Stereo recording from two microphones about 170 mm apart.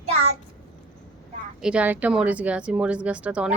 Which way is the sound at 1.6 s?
10° right (ahead or behind).